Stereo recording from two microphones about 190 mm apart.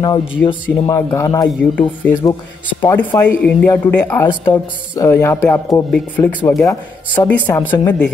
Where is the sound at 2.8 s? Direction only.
10° left (ahead or behind).